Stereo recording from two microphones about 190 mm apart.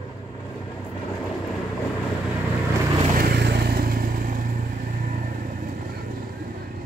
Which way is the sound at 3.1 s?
55° right (ahead or behind).